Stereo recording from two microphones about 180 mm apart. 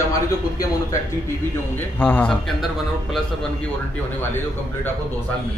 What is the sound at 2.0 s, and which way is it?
Speech, 10° left (ahead or behind).